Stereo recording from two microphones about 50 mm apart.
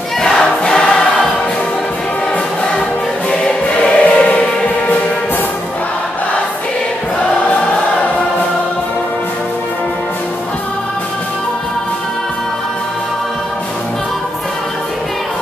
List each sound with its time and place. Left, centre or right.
0.2 s choir: centre
3.3 s choir: centre
7.7 s choir: left